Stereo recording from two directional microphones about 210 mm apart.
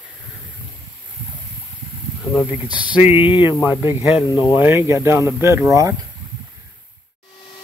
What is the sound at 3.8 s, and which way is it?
Speech, 10° right (ahead or behind).